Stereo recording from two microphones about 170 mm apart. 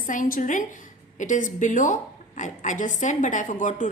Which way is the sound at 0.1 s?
50° left (ahead or behind).